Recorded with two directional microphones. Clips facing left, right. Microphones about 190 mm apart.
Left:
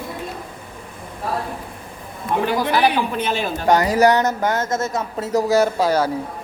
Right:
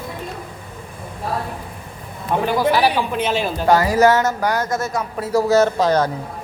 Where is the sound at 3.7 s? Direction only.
20° left (ahead or behind).